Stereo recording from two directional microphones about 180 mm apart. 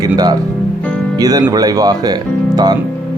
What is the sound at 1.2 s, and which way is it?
Speech, 20° right (ahead or behind).